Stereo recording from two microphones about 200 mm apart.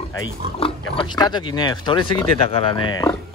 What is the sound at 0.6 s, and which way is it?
Speech, 25° left (ahead or behind).